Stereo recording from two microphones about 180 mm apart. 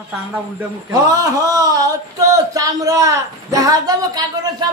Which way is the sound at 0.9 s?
20° right (ahead or behind).